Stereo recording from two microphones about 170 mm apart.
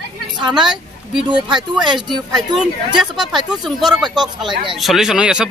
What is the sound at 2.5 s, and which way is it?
A man's voice, 5° right (ahead or behind).